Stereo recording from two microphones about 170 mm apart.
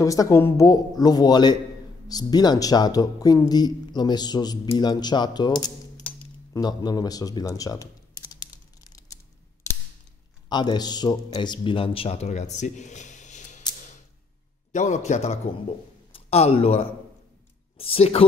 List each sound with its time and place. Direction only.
0.0 s speech: 20° left (ahead or behind)
6.5 s typing: 25° left (ahead or behind)
10.5 s speech: 25° left (ahead or behind); by 13.7 s 45° left (ahead or behind)
14.7 s a man's voice: 45° left (ahead or behind)